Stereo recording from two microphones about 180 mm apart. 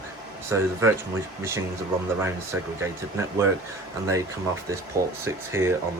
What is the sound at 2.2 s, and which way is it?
Speech, 15° right (ahead or behind).